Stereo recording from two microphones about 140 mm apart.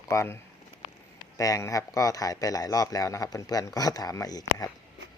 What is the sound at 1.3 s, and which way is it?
A man's voice, 25° left (ahead or behind).